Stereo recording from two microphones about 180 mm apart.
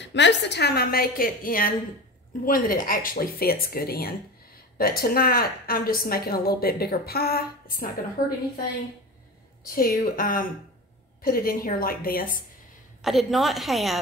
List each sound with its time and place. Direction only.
0.0 s a woman's voice: 80° left; by 7.9 s 55° left (ahead or behind)
9.7 s a woman's voice: 50° left (ahead or behind)
13.0 s a woman's voice: centre (ahead or behind)